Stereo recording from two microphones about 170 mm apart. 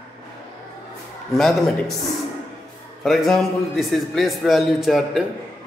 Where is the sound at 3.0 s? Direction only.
Centre (ahead or behind).